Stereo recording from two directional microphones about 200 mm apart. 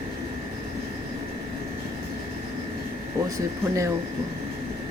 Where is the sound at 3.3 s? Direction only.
15° right (ahead or behind).